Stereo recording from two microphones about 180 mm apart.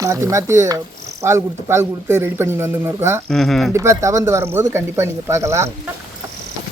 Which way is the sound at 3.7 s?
15° right (ahead or behind).